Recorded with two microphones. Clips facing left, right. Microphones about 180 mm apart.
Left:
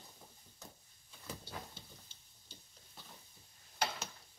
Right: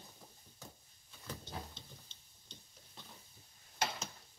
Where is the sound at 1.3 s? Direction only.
10° left (ahead or behind).